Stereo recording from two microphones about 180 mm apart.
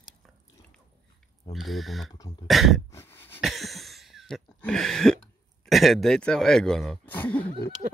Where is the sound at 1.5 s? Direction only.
Centre (ahead or behind).